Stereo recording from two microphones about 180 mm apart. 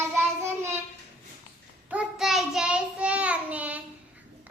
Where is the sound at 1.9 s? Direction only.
Centre (ahead or behind).